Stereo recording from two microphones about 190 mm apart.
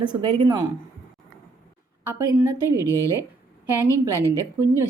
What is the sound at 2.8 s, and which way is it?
Speech, 15° left (ahead or behind).